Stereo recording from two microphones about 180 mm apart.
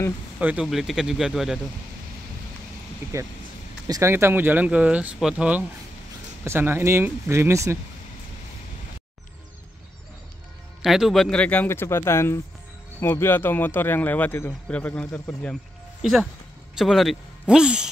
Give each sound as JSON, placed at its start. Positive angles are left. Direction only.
{"t": 0.4, "sound": "speech", "side_deg": -5}
{"t": 3.8, "sound": "speech", "side_deg": -15}
{"t": 10.8, "sound": "speech", "side_deg": 0}
{"t": 16.0, "sound": "speech", "side_deg": 0}